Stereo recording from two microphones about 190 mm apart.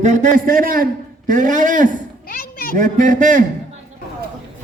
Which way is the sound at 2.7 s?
45° right (ahead or behind).